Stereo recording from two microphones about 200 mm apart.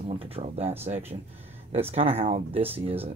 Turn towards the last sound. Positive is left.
turn(degrees=-30)  # may be behind; listen again after turning